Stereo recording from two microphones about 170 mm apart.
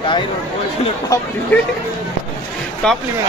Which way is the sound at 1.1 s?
20° left (ahead or behind).